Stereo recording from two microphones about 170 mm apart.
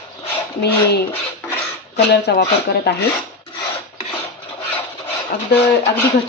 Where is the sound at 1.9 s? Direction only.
75° left (ahead or behind).